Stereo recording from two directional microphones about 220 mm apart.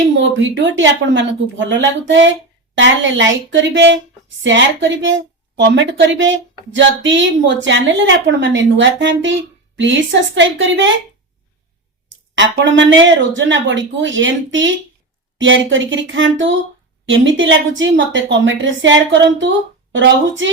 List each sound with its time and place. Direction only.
0.1 s a woman's voice: 55° right (ahead or behind)
12.3 s a woman's voice: 55° right (ahead or behind)